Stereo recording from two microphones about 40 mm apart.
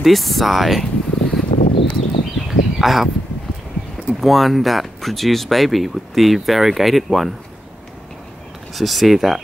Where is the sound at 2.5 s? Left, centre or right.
Centre.